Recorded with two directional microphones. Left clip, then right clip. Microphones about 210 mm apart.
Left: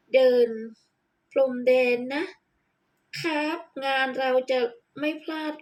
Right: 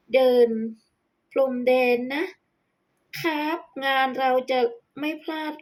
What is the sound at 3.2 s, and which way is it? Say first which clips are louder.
Speech: right 1 dB; 15° right (ahead or behind).